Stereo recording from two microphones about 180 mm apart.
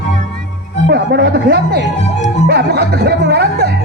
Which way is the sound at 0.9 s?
60° right (ahead or behind).